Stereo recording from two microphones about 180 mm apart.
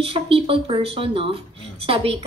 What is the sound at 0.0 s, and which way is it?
Speech, 30° right (ahead or behind).